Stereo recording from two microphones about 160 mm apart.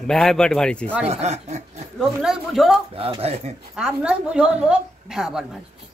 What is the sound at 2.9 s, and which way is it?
Speech, 35° right (ahead or behind).